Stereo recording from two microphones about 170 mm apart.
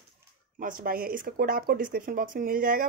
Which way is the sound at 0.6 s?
55° right (ahead or behind).